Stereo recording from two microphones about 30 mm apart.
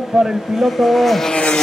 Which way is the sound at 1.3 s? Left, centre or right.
Left.